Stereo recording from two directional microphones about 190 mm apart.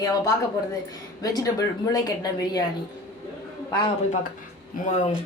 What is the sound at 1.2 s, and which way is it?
Speech, 20° left (ahead or behind).